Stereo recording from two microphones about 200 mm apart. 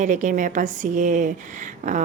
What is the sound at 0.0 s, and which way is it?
A woman's voice, 40° right (ahead or behind).